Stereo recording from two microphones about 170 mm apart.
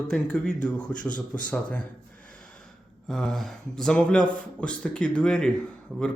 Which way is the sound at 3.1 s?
5° left (ahead or behind).